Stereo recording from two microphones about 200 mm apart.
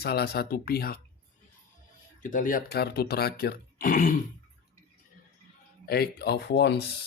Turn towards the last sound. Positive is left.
turn(degrees=55)  # may be behind; listen again after turning